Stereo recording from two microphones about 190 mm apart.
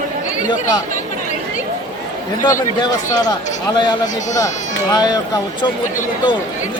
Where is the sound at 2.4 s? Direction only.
20° left (ahead or behind).